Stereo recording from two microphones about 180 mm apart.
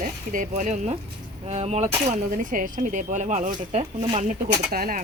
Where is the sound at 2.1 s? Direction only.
45° right (ahead or behind).